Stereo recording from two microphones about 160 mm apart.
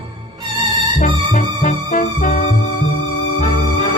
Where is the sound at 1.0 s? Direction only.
55° left (ahead or behind).